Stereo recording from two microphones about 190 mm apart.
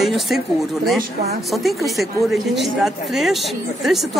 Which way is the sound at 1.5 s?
Centre (ahead or behind).